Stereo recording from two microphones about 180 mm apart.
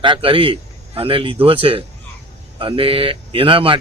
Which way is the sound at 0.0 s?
30° right (ahead or behind).